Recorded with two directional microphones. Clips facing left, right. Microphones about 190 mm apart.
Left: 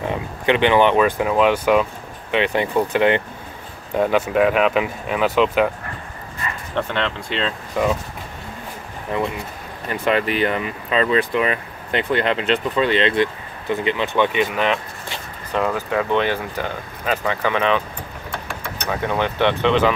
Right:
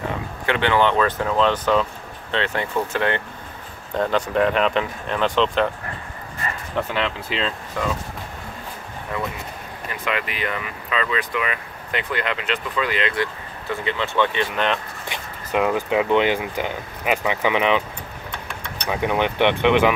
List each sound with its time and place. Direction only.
0.5 s speech: 20° left (ahead or behind)
6.7 s speech: 5° right (ahead or behind)
7.8 s speech: 15° left (ahead or behind)
9.1 s speech: 25° left (ahead or behind)
14.5 s speech: centre (ahead or behind)
15.0 s speech: 15° right (ahead or behind)
18.9 s speech: 15° right (ahead or behind)